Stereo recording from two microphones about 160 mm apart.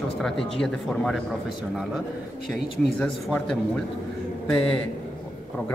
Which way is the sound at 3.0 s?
5° left (ahead or behind).